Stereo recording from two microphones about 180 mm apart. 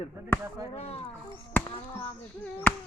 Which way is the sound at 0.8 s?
35° left (ahead or behind).